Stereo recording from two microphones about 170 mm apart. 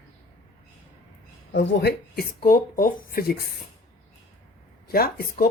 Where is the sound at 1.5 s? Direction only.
75° left (ahead or behind); by 3.3 s 60° left (ahead or behind).